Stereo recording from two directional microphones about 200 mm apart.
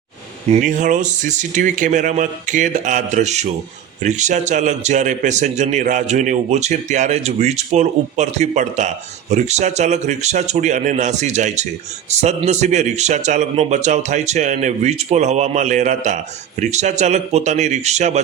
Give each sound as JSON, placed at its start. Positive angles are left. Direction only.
{"t": 0.5, "sound": "a man's voice", "side_deg": -40}